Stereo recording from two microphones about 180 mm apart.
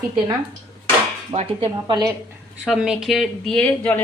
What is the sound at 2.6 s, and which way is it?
Speech, 5° right (ahead or behind).